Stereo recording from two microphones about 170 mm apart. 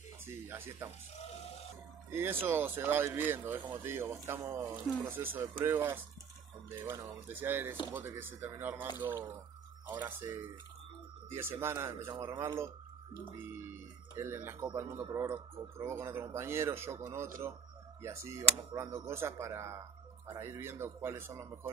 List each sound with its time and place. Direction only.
0.5 s speech: 10° right (ahead or behind)
2.0 s speech: 15° right (ahead or behind)